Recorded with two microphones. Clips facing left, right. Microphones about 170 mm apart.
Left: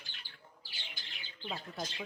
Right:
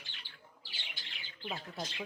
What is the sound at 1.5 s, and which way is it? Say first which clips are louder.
Speech: left 1 dB; 10° right (ahead or behind).